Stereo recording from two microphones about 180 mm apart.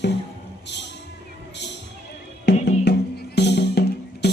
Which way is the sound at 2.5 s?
70° left (ahead or behind).